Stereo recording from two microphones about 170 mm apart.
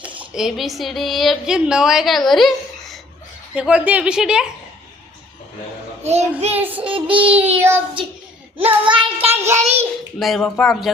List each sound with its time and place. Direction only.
0.3 s a woman's voice: centre (ahead or behind)
6.0 s child singing: 40° right (ahead or behind)
7.5 s child singing: 10° right (ahead or behind)
8.5 s child singing: 30° right (ahead or behind)
10.2 s a woman's voice: centre (ahead or behind)